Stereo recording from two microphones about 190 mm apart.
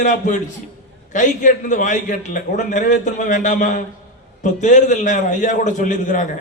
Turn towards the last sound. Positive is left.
turn(degrees=45)  # may be behind; listen again after turning